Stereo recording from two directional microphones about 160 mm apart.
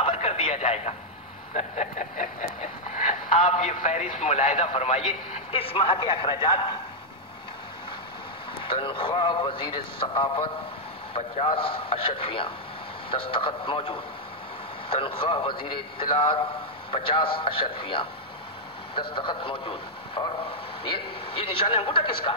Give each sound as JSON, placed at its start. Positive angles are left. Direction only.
{"t": 0.0, "sound": "radio", "side_deg": 40}
{"t": 1.5, "sound": "a sound", "side_deg": 45}
{"t": 5.5, "sound": "speech", "side_deg": 35}
{"t": 8.6, "sound": "speech", "side_deg": 30}